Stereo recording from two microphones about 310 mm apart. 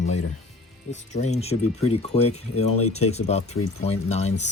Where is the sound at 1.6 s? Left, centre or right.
Left.